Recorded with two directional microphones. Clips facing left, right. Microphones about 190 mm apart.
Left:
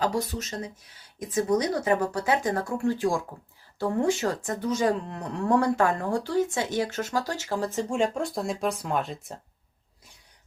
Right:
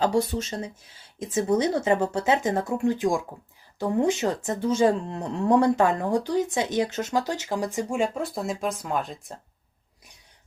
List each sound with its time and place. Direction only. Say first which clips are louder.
0.0 s speech: right 4 dB; 30° right (ahead or behind); by 9.4 s centre (ahead or behind)